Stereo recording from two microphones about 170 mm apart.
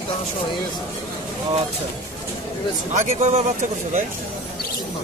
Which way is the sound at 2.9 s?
45° right (ahead or behind).